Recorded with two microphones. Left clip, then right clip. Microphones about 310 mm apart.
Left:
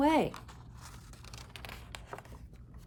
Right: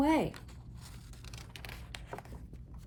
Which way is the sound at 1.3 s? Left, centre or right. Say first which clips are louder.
Left 1 dB; centre.